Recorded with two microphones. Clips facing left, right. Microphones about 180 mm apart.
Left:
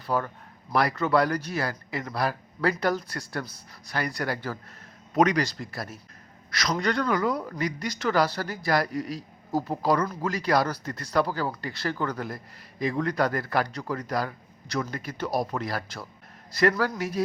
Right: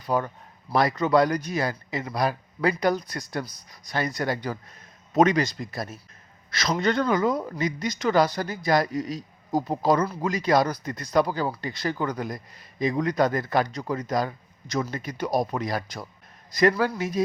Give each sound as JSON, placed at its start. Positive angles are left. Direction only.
{"t": 0.0, "sound": "a man's voice", "side_deg": -15}